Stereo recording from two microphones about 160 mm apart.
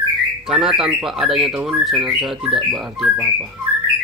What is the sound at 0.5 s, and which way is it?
Speech, 5° right (ahead or behind).